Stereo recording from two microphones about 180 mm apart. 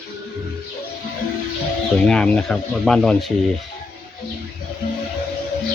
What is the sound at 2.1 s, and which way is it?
Speech, 5° left (ahead or behind).